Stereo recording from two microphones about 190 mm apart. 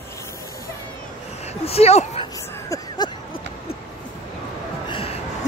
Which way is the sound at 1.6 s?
30° left (ahead or behind).